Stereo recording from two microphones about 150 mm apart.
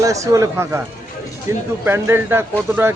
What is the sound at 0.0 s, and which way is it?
Speech, 20° right (ahead or behind).